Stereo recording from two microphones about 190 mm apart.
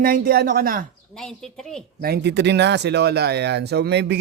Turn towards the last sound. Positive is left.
turn(degrees=-60)  # may be behind; listen again after turning